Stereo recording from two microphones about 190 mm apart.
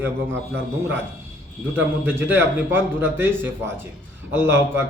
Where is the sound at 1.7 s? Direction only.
10° right (ahead or behind).